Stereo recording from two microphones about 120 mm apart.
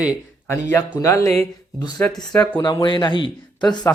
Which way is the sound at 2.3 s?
10° left (ahead or behind).